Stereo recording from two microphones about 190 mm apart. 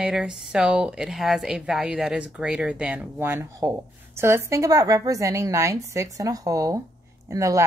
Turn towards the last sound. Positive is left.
turn(degrees=-15)  # may be behind; listen again after turning